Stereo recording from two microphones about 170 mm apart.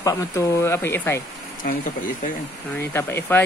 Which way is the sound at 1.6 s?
55° left (ahead or behind).